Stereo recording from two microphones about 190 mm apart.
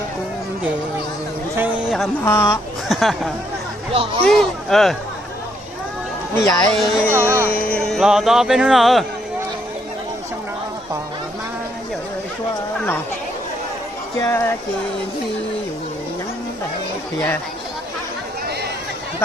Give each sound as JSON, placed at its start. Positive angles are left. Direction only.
{"t": 1.5, "sound": "a sound", "side_deg": -10}
{"t": 2.2, "sound": "speech", "side_deg": 15}
{"t": 2.9, "sound": "speech", "side_deg": 0}
{"t": 4.3, "sound": "speech", "side_deg": 0}
{"t": 6.4, "sound": "speech", "side_deg": 20}
{"t": 6.7, "sound": "speech", "side_deg": 0}
{"t": 7.1, "sound": "speech", "side_deg": -10}
{"t": 7.4, "sound": "speech", "side_deg": 10}
{"t": 14.2, "sound": "speech", "side_deg": 15}
{"t": 17.2, "sound": "speech", "side_deg": 10}